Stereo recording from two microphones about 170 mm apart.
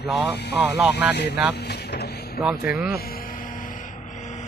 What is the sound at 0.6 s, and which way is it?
Speech, 10° right (ahead or behind).